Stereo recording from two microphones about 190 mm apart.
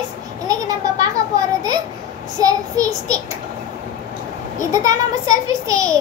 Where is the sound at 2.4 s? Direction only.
20° right (ahead or behind).